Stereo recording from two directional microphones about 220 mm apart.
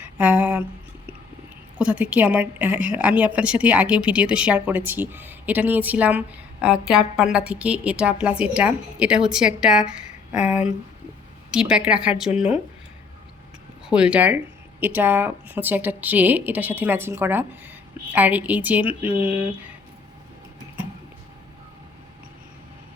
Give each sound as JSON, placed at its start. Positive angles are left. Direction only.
{"t": 0.2, "sound": "a woman's voice", "side_deg": -5}
{"t": 1.8, "sound": "a woman's voice", "side_deg": -5}
{"t": 10.3, "sound": "speech", "side_deg": 30}
{"t": 11.5, "sound": "a woman's voice", "side_deg": -5}
{"t": 13.9, "sound": "speech", "side_deg": -5}